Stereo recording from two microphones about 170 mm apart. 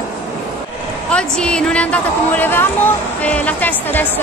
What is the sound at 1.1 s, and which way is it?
A woman's voice, 5° left (ahead or behind).